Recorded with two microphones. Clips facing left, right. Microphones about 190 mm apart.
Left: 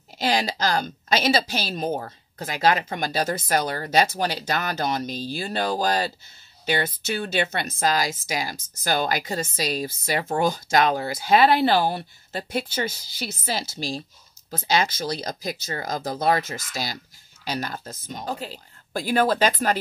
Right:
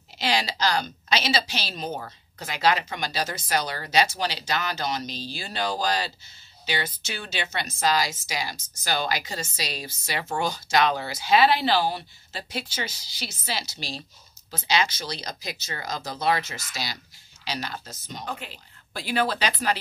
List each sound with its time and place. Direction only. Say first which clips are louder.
0.2 s speech: left 2 dB; 50° left (ahead or behind)
10.2 s speech: left 5 dB; 35° left (ahead or behind)
10.5 s speech: left 2 dB; 50° left (ahead or behind)
18.2 s speech: left 5 dB; 40° left (ahead or behind)